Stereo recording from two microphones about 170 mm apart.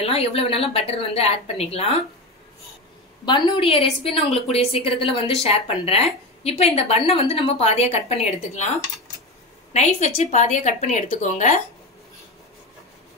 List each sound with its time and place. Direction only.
0.0 s a woman's voice: 35° left (ahead or behind)
3.3 s a woman's voice: 30° left (ahead or behind)
9.7 s a woman's voice: 40° left (ahead or behind)